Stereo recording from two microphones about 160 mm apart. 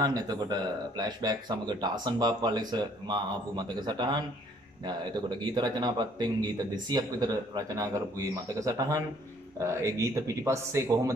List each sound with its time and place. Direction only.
0.0 s speech: 25° right (ahead or behind)